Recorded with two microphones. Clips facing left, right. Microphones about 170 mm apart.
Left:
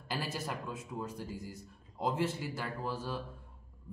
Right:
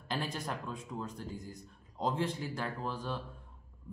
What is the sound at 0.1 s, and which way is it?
A man's voice, 5° left (ahead or behind).